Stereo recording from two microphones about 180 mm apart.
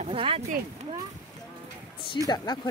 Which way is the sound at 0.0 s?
30° right (ahead or behind).